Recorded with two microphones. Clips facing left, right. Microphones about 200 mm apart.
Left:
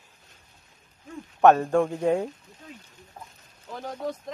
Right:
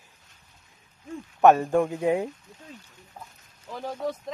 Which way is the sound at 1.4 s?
5° right (ahead or behind).